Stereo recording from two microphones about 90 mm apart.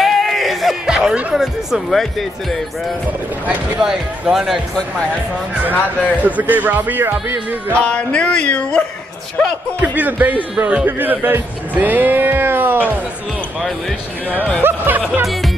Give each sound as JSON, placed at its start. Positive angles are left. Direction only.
{"t": 0.0, "sound": "speech", "side_deg": 0}
{"t": 3.8, "sound": "speech", "side_deg": -5}
{"t": 5.7, "sound": "speech", "side_deg": 20}
{"t": 6.2, "sound": "speech", "side_deg": -20}
{"t": 7.8, "sound": "a sound", "side_deg": 15}
{"t": 9.8, "sound": "speech", "side_deg": -20}
{"t": 14.6, "sound": "speech", "side_deg": -20}